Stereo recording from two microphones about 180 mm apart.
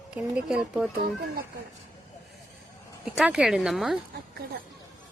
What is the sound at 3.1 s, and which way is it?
Speech, 5° right (ahead or behind).